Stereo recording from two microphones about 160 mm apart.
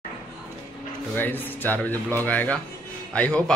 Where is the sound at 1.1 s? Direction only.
10° left (ahead or behind).